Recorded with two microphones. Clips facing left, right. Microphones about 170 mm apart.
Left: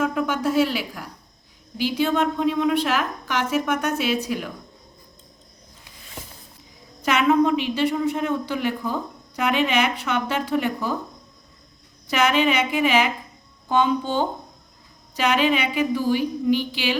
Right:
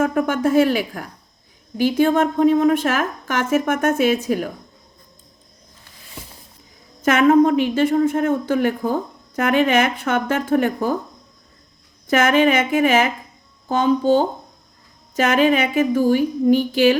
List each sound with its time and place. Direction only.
0.0 s a woman's voice: 50° right (ahead or behind)
7.0 s a woman's voice: 50° right (ahead or behind)
12.0 s a woman's voice: 50° right (ahead or behind)